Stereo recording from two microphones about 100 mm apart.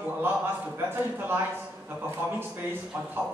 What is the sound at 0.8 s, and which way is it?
Speech, 20° right (ahead or behind).